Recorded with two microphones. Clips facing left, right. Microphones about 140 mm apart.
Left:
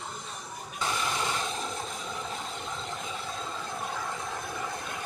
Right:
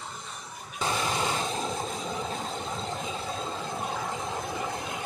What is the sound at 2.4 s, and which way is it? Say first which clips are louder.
Vehicle: right 4 dB; 35° right (ahead or behind).